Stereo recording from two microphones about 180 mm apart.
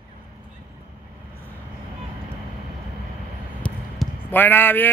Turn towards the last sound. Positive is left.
turn(degrees=10)  # may be behind; listen again after turning